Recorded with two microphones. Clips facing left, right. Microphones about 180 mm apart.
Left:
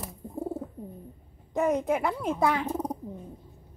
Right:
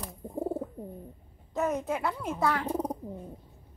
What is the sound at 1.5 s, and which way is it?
Speech, 15° left (ahead or behind).